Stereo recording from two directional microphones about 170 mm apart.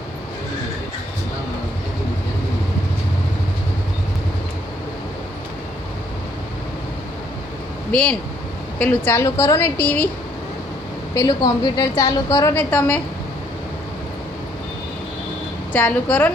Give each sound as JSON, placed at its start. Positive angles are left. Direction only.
{"t": 8.8, "sound": "a woman's voice", "side_deg": 10}
{"t": 11.1, "sound": "a woman's voice", "side_deg": 20}
{"t": 15.7, "sound": "a woman's voice", "side_deg": 10}